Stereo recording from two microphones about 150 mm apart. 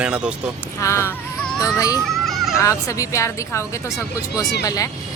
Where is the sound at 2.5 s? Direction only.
20° left (ahead or behind).